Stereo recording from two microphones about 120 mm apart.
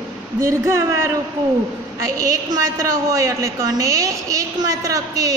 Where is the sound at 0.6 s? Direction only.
25° right (ahead or behind).